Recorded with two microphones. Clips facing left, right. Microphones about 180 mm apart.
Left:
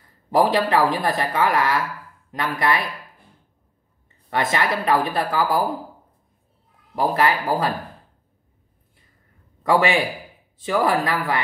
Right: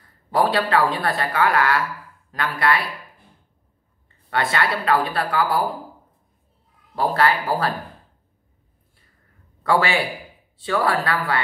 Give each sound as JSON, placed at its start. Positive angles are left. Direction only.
{"t": 0.5, "sound": "a woman's voice", "side_deg": 20}
{"t": 4.3, "sound": "a woman's voice", "side_deg": 20}
{"t": 7.0, "sound": "speech", "side_deg": 15}
{"t": 9.6, "sound": "a man's voice", "side_deg": 15}